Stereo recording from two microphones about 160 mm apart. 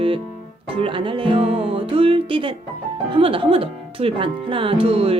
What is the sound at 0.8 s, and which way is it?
Speech, 30° right (ahead or behind).